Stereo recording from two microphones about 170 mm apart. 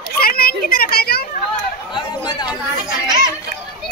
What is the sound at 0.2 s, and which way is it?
Children playing, 60° left (ahead or behind).